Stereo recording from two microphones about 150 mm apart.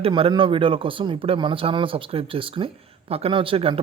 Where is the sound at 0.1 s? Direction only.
35° right (ahead or behind).